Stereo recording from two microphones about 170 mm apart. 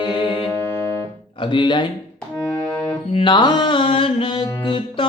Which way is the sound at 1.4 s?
30° left (ahead or behind).